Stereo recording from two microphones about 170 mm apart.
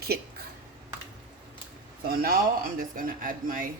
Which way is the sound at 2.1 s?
60° right (ahead or behind).